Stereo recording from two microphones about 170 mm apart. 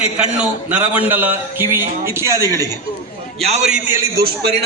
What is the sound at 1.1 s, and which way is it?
Music, 10° right (ahead or behind).